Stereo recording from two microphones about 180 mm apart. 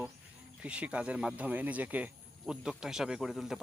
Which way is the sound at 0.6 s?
5° right (ahead or behind).